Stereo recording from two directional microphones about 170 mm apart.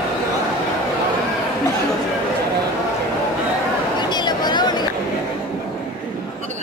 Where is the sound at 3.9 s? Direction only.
25° left (ahead or behind).